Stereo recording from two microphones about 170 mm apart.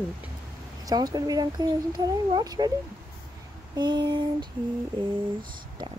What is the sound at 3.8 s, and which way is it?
Speech, 25° right (ahead or behind).